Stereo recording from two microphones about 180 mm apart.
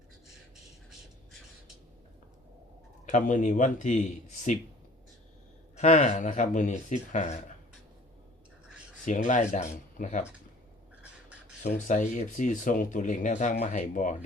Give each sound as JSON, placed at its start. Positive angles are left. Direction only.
{"t": 0.5, "sound": "a sound", "side_deg": 0}
{"t": 3.1, "sound": "speech", "side_deg": 45}
{"t": 5.7, "sound": "speech", "side_deg": 40}
{"t": 9.0, "sound": "speech", "side_deg": 45}
{"t": 11.9, "sound": "speech", "side_deg": 45}